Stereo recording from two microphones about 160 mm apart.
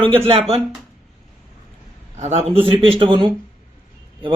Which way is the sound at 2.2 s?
40° right (ahead or behind).